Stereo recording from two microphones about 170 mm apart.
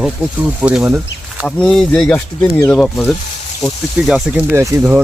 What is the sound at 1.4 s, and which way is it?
Speech, 5° left (ahead or behind).